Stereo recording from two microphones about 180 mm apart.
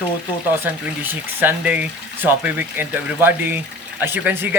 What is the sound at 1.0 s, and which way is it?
Speech, 10° right (ahead or behind).